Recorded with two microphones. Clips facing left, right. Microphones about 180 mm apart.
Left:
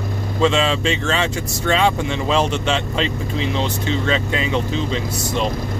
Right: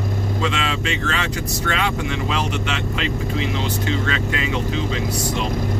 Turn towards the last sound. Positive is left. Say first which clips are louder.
# left 2 dB
turn(degrees=25)  # may be behind; listen again after turning